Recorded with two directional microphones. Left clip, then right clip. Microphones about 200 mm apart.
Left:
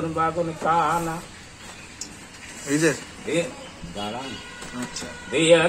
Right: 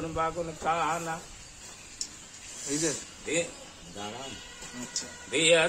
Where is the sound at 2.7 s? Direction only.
10° right (ahead or behind).